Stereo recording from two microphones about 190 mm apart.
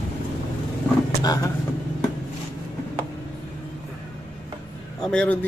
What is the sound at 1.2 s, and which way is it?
Speech, 20° left (ahead or behind).